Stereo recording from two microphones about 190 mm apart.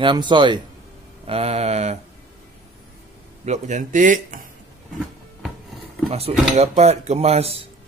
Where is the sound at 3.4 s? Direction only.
35° right (ahead or behind).